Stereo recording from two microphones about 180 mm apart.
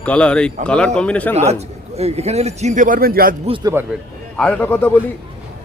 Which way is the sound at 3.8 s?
10° right (ahead or behind).